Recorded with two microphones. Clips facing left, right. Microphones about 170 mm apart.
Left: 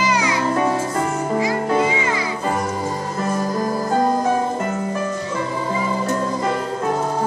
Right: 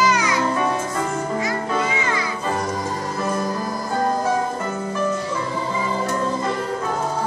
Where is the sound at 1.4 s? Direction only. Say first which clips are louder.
Left 4 dB; 25° left (ahead or behind).